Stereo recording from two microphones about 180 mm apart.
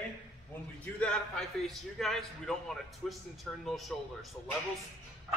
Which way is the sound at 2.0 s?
Centre (ahead or behind).